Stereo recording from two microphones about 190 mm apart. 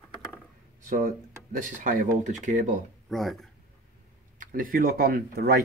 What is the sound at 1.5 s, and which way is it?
Speech, 45° right (ahead or behind).